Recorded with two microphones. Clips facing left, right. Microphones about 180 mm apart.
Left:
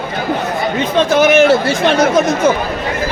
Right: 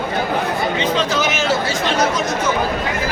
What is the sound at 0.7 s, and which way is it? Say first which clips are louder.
Speech: left 10 dB; 55° left (ahead or behind).